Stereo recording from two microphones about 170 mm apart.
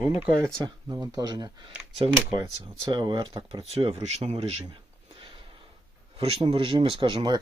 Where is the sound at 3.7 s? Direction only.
35° right (ahead or behind).